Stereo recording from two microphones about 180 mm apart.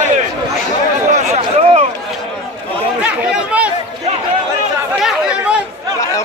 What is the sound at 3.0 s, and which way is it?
Chatter, 5° right (ahead or behind).